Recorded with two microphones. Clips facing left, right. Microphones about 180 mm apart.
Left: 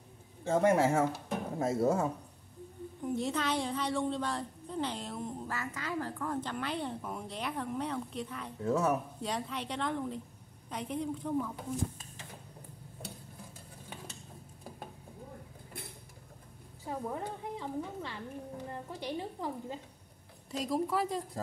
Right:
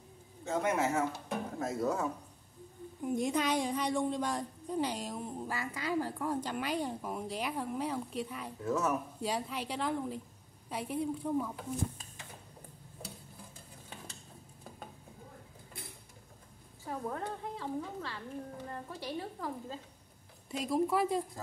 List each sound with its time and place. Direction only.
0.5 s a woman's voice: 30° left (ahead or behind)
3.0 s a woman's voice: 15° right (ahead or behind)
8.6 s speech: 30° left (ahead or behind)
9.2 s a woman's voice: 10° right (ahead or behind)
16.8 s a woman's voice: 20° left (ahead or behind)
20.5 s a woman's voice: 10° right (ahead or behind)